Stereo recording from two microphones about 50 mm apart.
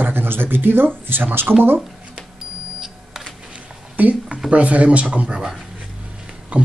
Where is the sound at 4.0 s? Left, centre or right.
Right.